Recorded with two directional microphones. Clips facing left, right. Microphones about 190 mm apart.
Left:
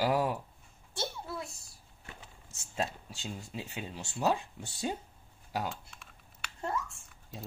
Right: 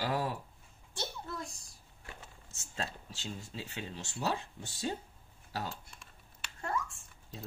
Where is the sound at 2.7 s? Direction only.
15° left (ahead or behind).